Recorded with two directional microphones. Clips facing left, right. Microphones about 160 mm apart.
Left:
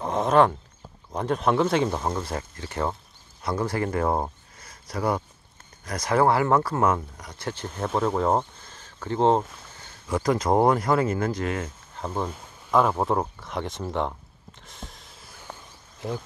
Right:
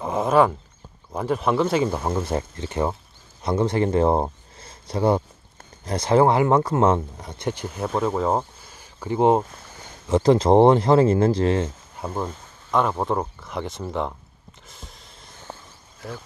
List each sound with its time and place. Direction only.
0.0 s a sound: 5° right (ahead or behind)
1.1 s speech: 5° right (ahead or behind)
2.2 s speech: 25° right (ahead or behind)
7.6 s speech: 5° right (ahead or behind)
10.0 s speech: 25° right (ahead or behind)
12.0 s speech: centre (ahead or behind)
14.7 s a sound: centre (ahead or behind)